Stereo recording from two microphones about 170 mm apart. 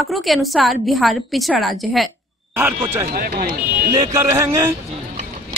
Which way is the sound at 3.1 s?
60° right (ahead or behind).